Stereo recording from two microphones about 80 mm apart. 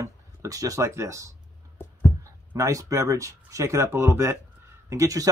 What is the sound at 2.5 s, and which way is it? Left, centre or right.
Speech, right.